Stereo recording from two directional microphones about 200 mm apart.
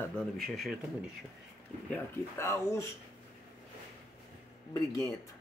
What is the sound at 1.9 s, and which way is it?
Speech, 10° left (ahead or behind).